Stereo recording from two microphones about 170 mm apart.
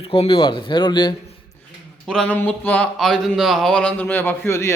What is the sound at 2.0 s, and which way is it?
Speech, 5° left (ahead or behind).